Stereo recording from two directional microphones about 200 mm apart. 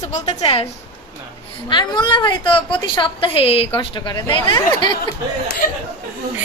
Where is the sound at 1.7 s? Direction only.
25° left (ahead or behind).